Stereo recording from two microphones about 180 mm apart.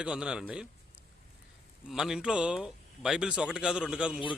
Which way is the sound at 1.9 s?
5° right (ahead or behind).